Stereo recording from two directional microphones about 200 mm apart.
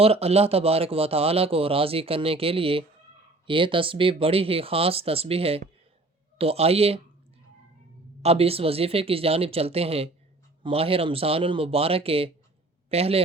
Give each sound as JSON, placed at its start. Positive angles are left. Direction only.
{"t": 0.0, "sound": "speech", "side_deg": -30}
{"t": 8.2, "sound": "speech", "side_deg": -30}